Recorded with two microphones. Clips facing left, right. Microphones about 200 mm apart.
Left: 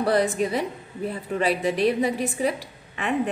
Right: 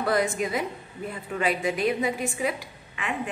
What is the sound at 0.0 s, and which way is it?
A woman's voice, 35° left (ahead or behind).